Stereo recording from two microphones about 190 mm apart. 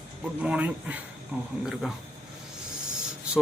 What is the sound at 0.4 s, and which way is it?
Speech, 5° right (ahead or behind).